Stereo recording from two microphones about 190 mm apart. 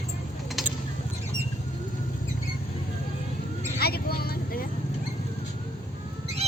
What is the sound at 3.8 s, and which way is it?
Vehicle, 55° left (ahead or behind).